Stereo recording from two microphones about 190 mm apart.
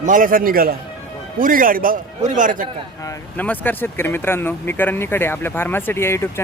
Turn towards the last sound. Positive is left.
turn(degrees=15)  # may be behind; listen again after turning